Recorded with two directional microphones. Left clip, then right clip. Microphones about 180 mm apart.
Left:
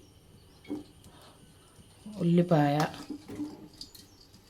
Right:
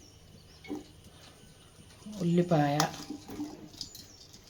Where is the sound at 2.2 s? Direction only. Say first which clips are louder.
Left 2 dB; 30° left (ahead or behind).